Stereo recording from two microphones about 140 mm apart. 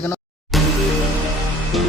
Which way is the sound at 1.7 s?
Centre (ahead or behind).